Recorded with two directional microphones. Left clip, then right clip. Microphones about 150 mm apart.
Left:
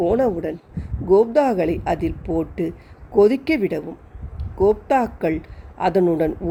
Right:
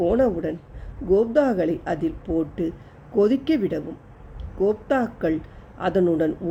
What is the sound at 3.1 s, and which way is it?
A man's voice, 25° left (ahead or behind).